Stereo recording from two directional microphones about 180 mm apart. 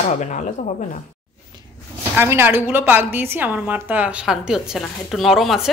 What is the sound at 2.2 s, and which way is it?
A woman's voice, 15° right (ahead or behind).